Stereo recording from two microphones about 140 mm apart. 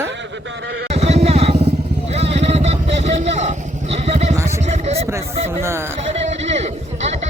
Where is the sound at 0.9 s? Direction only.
50° right (ahead or behind).